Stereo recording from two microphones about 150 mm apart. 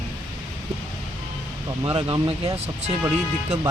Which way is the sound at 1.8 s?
35° right (ahead or behind).